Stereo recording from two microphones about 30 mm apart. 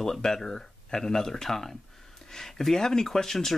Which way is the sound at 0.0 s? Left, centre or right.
Centre.